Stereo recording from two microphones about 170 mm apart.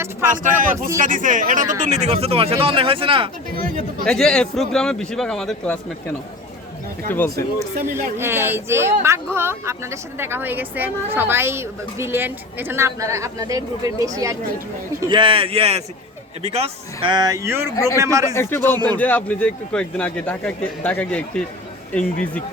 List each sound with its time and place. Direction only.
0.3 s speech: 50° right (ahead or behind); by 3.2 s 30° right (ahead or behind)
4.0 s speech: 5° left (ahead or behind)
7.1 s a man's voice: 15° left (ahead or behind)
8.2 s speech: 15° right (ahead or behind)
18.3 s a man's voice: 10° left (ahead or behind)